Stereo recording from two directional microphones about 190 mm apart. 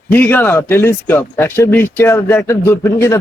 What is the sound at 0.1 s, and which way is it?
Speech, 10° left (ahead or behind).